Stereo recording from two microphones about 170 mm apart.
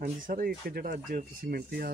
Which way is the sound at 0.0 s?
55° right (ahead or behind).